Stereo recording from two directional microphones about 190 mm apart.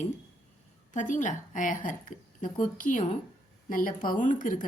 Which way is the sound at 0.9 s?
40° left (ahead or behind).